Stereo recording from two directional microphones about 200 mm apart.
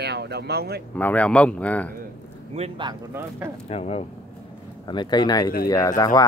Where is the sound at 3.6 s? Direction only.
30° left (ahead or behind).